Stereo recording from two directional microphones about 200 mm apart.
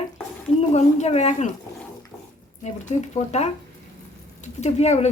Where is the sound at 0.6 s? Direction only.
35° left (ahead or behind).